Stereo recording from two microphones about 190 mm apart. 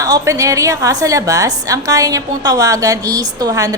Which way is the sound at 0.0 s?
20° right (ahead or behind).